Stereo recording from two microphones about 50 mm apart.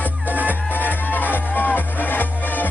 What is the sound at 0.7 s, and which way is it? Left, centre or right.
Music, left.